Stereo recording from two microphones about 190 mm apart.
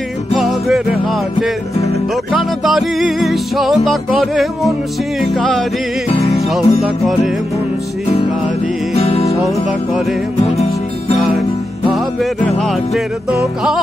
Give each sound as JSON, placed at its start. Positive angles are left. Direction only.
{"t": 0.3, "sound": "music", "side_deg": 0}
{"t": 6.0, "sound": "music", "side_deg": 35}
{"t": 6.5, "sound": "music", "side_deg": 0}
{"t": 8.9, "sound": "music", "side_deg": 35}
{"t": 11.9, "sound": "music", "side_deg": 0}